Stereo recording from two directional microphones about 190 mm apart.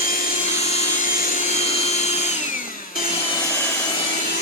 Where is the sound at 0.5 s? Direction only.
35° left (ahead or behind).